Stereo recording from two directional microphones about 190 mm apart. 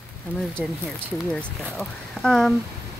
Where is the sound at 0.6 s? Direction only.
5° right (ahead or behind).